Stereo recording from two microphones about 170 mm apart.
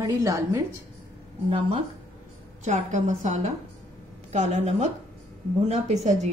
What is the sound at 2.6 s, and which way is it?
A woman's voice, 40° right (ahead or behind).